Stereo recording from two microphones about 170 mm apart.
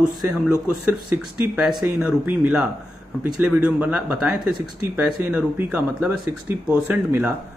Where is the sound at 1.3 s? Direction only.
5° right (ahead or behind).